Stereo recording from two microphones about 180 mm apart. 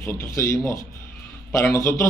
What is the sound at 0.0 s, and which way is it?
A man's voice, 15° left (ahead or behind).